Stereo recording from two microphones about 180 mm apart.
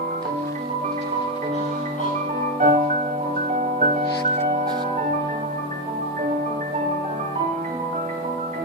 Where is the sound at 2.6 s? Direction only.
40° right (ahead or behind).